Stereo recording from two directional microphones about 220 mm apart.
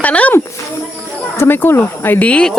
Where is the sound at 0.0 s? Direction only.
5° left (ahead or behind).